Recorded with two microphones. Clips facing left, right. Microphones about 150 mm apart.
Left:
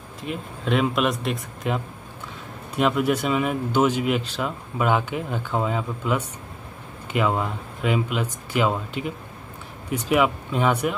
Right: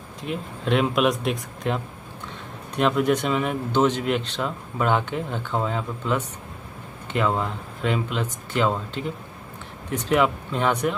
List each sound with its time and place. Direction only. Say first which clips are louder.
0.2 s a man's voice: right 1 dB; centre (ahead or behind)